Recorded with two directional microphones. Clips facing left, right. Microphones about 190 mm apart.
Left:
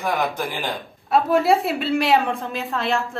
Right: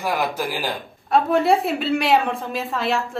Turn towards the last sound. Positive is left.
turn(degrees=0)  # may be behind; listen again after turning